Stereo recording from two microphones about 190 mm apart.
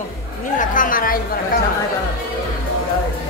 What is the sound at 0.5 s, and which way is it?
Speech, 45° left (ahead or behind).